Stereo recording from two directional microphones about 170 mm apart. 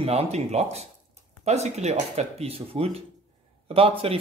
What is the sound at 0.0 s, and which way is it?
Speech, 40° right (ahead or behind).